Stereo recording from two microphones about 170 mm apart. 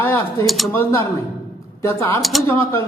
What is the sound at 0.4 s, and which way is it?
Speech, centre (ahead or behind).